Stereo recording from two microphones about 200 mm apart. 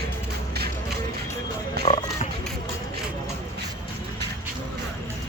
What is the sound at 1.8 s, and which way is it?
Music, 55° right (ahead or behind).